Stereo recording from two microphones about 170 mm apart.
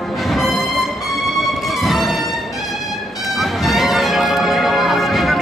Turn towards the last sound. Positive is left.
turn(degrees=0)  # may be behind; listen again after turning